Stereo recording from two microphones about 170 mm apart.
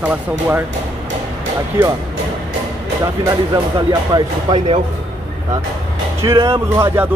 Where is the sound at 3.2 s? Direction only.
20° right (ahead or behind).